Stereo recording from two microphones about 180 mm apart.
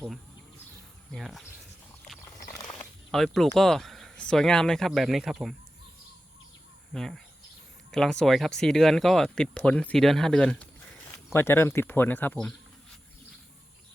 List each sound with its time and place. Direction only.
1.1 s speech: centre (ahead or behind)
2.2 s a sound: 15° left (ahead or behind)
2.6 s speech: 5° left (ahead or behind)
6.9 s speech: centre (ahead or behind)